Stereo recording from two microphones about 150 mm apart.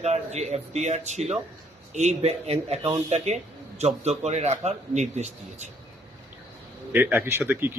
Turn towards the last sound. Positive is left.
turn(degrees=-15)  # may be behind; listen again after turning